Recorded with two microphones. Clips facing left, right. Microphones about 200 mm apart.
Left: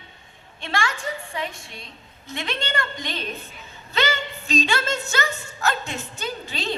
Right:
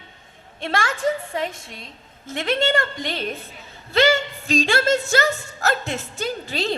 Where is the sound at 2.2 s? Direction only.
45° right (ahead or behind).